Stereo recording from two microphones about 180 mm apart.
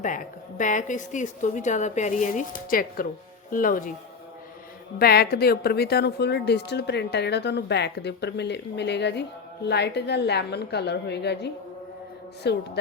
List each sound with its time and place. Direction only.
0.0 s a woman's voice: 45° left (ahead or behind)
4.9 s a woman's voice: 60° left (ahead or behind)